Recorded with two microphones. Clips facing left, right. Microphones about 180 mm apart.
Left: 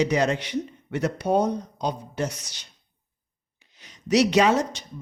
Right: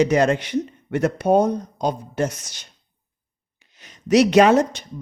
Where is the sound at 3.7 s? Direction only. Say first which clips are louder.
Right 5 dB; 50° right (ahead or behind).